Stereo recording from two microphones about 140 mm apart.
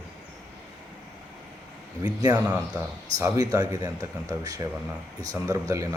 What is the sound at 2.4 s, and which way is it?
Speech, 10° right (ahead or behind).